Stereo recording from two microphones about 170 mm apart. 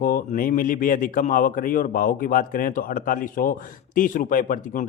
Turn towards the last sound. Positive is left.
turn(degrees=55)  # may be behind; listen again after turning